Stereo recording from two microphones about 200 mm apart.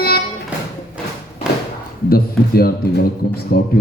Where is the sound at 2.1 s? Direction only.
50° left (ahead or behind).